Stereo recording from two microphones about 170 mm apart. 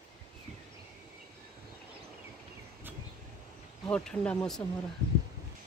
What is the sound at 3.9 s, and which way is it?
Speech, 5° left (ahead or behind).